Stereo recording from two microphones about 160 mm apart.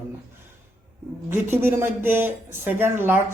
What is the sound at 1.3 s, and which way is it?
A man's voice, 15° right (ahead or behind).